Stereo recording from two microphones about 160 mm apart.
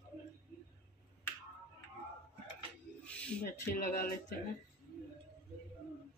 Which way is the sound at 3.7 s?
60° left (ahead or behind).